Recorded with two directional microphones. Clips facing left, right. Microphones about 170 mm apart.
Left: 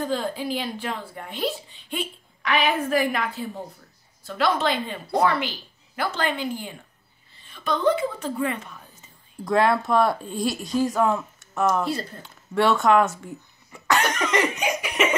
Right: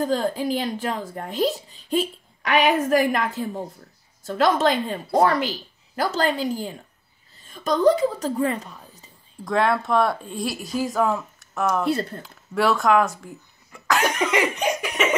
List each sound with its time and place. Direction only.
0.0 s a woman's voice: 45° right (ahead or behind)
9.4 s speech: centre (ahead or behind)
14.1 s cough: 5° right (ahead or behind)
14.6 s laughter: centre (ahead or behind)